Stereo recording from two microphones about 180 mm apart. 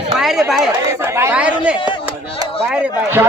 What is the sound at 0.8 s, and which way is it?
Speech, 15° right (ahead or behind).